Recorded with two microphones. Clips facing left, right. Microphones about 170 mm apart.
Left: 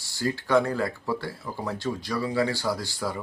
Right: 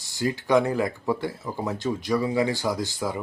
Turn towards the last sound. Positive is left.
turn(degrees=-20)  # may be behind; listen again after turning